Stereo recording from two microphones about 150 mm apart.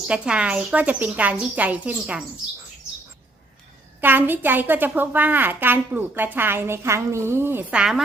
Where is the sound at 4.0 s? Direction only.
15° right (ahead or behind).